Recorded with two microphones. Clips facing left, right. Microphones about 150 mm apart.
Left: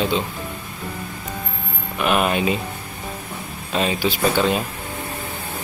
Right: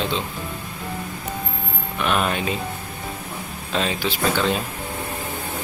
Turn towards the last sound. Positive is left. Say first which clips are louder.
# left 2 dB
turn(degrees=5)  # may be behind; listen again after turning